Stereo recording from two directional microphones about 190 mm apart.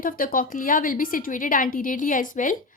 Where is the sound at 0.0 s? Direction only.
45° left (ahead or behind).